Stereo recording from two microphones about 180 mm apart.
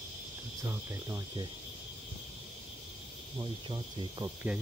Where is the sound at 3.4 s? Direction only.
25° right (ahead or behind).